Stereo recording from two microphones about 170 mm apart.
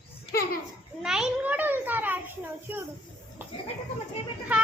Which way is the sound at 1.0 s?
5° right (ahead or behind).